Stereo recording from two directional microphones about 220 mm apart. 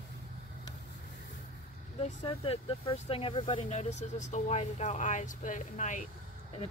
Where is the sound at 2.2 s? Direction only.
25° left (ahead or behind).